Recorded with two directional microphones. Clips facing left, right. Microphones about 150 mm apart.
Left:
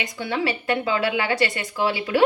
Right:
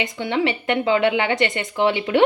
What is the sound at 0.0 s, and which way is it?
Speech, 20° right (ahead or behind).